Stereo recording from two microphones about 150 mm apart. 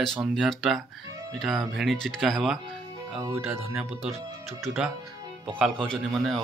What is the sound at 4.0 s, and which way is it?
Speech, 45° right (ahead or behind).